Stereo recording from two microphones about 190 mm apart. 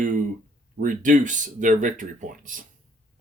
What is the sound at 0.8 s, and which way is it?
Speech, 45° right (ahead or behind).